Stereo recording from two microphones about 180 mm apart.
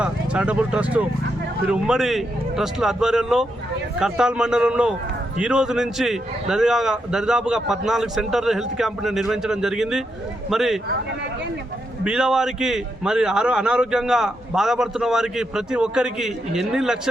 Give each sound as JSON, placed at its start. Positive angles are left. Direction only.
{"t": 0.0, "sound": "a man's voice", "side_deg": -5}
{"t": 12.0, "sound": "a man's voice", "side_deg": -5}